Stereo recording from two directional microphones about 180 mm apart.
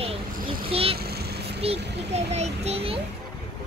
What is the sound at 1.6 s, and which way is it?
A child's voice, 35° right (ahead or behind).